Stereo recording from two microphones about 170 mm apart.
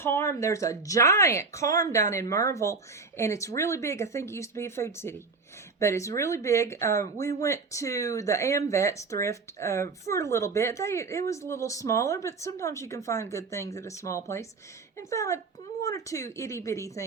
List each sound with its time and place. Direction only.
0.0 s speech: 15° left (ahead or behind)